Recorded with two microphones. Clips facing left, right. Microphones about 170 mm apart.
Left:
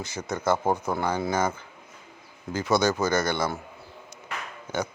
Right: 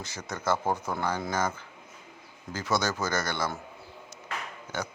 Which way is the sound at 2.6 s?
55° left (ahead or behind).